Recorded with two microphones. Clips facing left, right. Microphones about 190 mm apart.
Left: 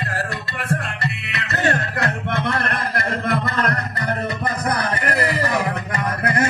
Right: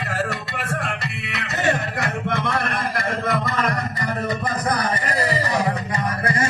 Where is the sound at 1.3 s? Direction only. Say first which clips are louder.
Even; 65° left (ahead or behind).